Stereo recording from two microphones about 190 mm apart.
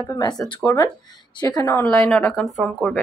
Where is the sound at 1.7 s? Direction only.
10° left (ahead or behind).